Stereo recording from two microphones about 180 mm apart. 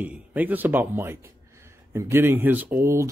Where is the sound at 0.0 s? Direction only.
10° right (ahead or behind).